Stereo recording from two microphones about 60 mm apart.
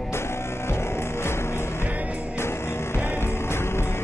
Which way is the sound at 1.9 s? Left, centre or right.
Right.